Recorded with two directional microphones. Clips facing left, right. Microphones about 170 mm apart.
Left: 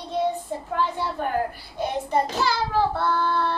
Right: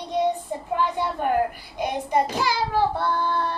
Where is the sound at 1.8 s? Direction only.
15° right (ahead or behind).